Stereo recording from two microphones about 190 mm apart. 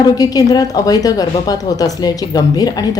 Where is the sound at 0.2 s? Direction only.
20° left (ahead or behind).